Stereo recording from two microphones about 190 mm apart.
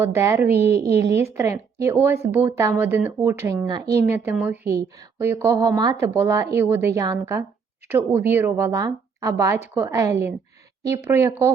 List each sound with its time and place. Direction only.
0.0 s a woman's voice: 15° right (ahead or behind)
0.5 s a woman's voice: 60° right (ahead or behind)
1.1 s a woman's voice: 15° right (ahead or behind)